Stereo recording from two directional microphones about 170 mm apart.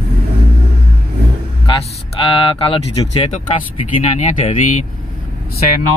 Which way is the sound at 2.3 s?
30° left (ahead or behind).